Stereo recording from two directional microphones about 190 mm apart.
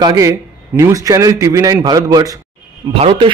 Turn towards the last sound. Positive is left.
turn(degrees=-25)  # may be behind; listen again after turning